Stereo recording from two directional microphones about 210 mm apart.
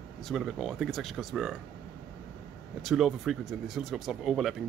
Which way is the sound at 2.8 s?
Centre (ahead or behind).